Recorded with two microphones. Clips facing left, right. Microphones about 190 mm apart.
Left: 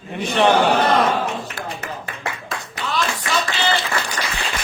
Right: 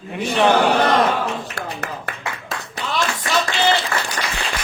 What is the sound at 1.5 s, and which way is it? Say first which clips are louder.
Speech: right 1 dB; 70° right (ahead or behind).